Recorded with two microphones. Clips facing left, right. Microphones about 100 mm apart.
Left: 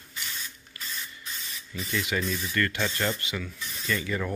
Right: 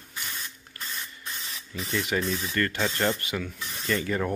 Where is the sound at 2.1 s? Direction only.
25° right (ahead or behind).